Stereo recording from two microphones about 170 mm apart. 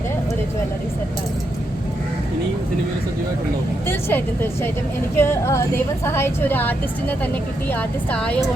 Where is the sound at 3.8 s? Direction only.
15° left (ahead or behind).